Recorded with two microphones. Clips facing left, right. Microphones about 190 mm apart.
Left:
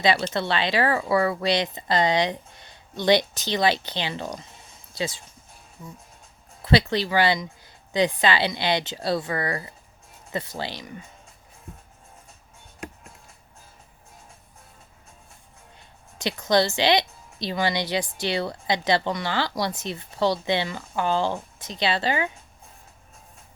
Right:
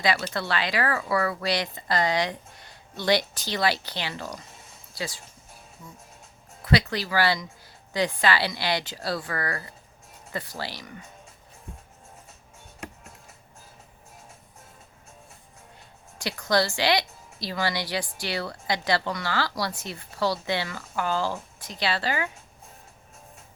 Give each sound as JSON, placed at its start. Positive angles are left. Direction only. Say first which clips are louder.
{"t": 0.0, "sound": "speech", "louder": "left 4 dB", "side_deg": 25}
{"t": 6.7, "sound": "speech", "louder": "left 3 dB", "side_deg": 25}
{"t": 16.1, "sound": "speech", "louder": "left 3 dB", "side_deg": 20}